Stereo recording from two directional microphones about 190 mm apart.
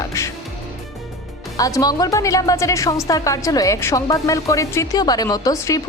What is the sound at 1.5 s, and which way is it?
Speech, 20° left (ahead or behind).